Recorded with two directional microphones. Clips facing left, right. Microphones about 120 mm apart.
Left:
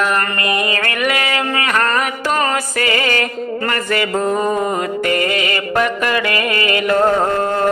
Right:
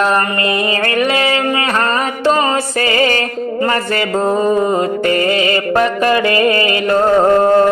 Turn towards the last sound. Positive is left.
turn(degrees=-30)  # may be behind; listen again after turning